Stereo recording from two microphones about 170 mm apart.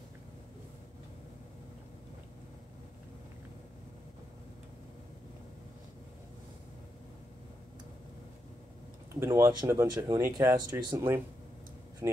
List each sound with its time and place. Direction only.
9.1 s speech: 15° right (ahead or behind)